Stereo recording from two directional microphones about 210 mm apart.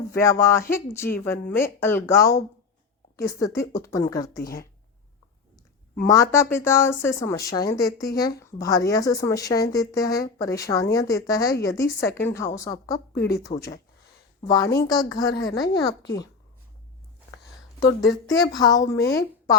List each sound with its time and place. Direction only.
0.1 s speech: 15° left (ahead or behind)
6.0 s speech: 15° left (ahead or behind)
13.5 s speech: 35° left (ahead or behind)
14.4 s a woman's voice: 20° left (ahead or behind)
17.7 s speech: 15° left (ahead or behind)